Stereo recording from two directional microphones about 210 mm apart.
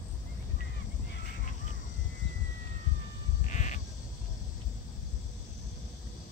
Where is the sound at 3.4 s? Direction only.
35° left (ahead or behind).